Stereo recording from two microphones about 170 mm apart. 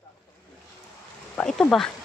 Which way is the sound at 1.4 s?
5° left (ahead or behind).